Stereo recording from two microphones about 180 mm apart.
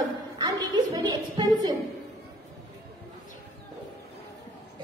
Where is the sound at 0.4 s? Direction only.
20° right (ahead or behind).